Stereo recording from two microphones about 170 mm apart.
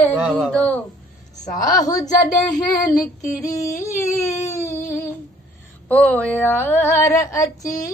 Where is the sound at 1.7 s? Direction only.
20° left (ahead or behind).